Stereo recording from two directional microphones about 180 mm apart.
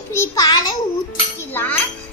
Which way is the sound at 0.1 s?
15° left (ahead or behind).